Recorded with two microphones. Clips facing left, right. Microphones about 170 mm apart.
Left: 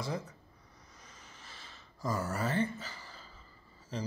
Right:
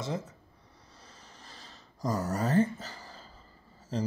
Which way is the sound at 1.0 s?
35° right (ahead or behind).